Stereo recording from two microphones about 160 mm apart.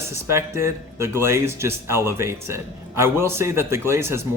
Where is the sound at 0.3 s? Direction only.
15° right (ahead or behind).